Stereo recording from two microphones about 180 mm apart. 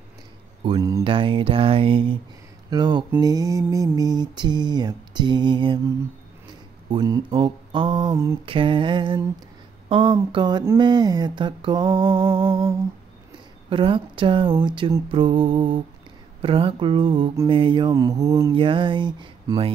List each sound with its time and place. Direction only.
0.7 s mantra: 20° right (ahead or behind)
1.0 s mantra: 30° right (ahead or behind)
6.9 s mantra: 25° right (ahead or behind)
8.5 s mantra: 30° right (ahead or behind)
9.8 s speech: 30° right (ahead or behind)
10.3 s mantra: 25° right (ahead or behind)
13.7 s mantra: 30° right (ahead or behind)
18.5 s mantra: 30° right (ahead or behind)